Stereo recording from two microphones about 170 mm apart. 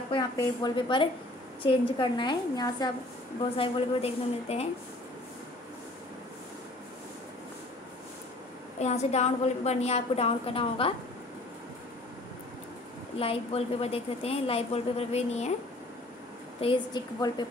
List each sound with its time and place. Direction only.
0.4 s a woman's voice: 25° left (ahead or behind)
3.5 s a woman's voice: 35° left (ahead or behind)
8.7 s a woman's voice: 40° left (ahead or behind)
13.2 s a woman's voice: 35° left (ahead or behind)
16.6 s a woman's voice: 25° left (ahead or behind)